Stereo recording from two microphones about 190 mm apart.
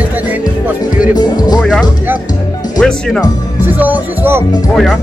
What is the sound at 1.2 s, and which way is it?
Speech, 20° left (ahead or behind).